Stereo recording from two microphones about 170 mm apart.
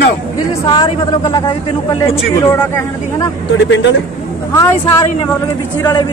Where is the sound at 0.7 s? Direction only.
25° left (ahead or behind).